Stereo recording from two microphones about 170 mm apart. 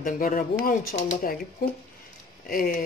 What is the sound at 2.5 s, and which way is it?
Speech, 55° left (ahead or behind).